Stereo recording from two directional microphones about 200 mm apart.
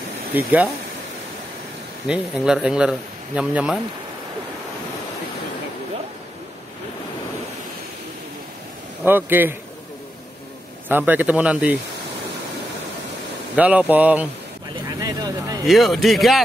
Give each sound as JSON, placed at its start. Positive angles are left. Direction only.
{"t": 0.3, "sound": "speech", "side_deg": -10}
{"t": 2.0, "sound": "speech", "side_deg": -5}
{"t": 9.0, "sound": "speech", "side_deg": -10}
{"t": 10.9, "sound": "speech", "side_deg": -10}
{"t": 13.6, "sound": "speech", "side_deg": -5}
{"t": 15.0, "sound": "vehicle", "side_deg": -20}
{"t": 15.6, "sound": "speech", "side_deg": 0}